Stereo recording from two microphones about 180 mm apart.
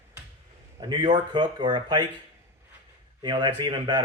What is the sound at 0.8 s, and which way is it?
Speech, 25° right (ahead or behind).